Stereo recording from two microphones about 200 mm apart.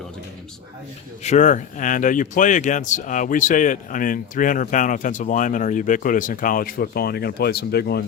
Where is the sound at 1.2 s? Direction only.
35° left (ahead or behind).